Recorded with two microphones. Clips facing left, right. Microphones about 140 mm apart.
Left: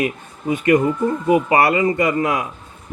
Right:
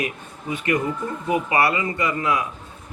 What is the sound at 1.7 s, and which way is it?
Speech, 30° left (ahead or behind).